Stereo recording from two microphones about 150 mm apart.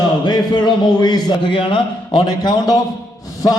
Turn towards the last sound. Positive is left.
turn(degrees=25)  # may be behind; listen again after turning